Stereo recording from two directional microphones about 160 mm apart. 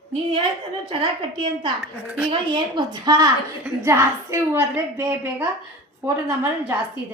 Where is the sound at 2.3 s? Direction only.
30° right (ahead or behind); by 5.4 s 15° right (ahead or behind).